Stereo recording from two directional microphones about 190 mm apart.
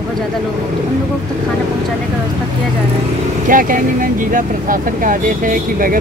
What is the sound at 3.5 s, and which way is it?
Speech, 45° right (ahead or behind).